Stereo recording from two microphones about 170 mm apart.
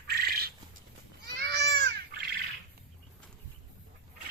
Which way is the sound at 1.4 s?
85° right.